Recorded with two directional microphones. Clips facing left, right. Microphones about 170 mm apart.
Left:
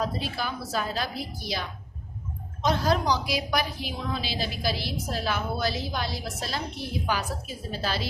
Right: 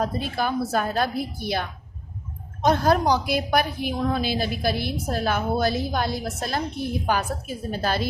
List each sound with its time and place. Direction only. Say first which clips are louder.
0.0 s a woman's voice: right 5 dB; 50° right (ahead or behind)